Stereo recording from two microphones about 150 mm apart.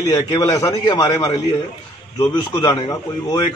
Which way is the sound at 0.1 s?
25° left (ahead or behind).